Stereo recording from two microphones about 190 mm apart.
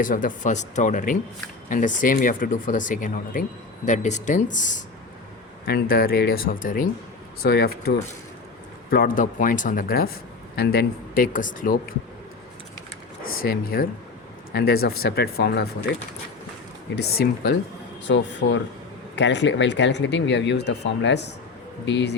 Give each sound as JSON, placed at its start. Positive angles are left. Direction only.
{"t": 0.0, "sound": "speech", "side_deg": 45}
{"t": 5.6, "sound": "speech", "side_deg": 50}
{"t": 13.4, "sound": "speech", "side_deg": 50}
{"t": 16.9, "sound": "speech", "side_deg": 55}
{"t": 18.0, "sound": "speech", "side_deg": 80}
{"t": 19.1, "sound": "speech", "side_deg": 70}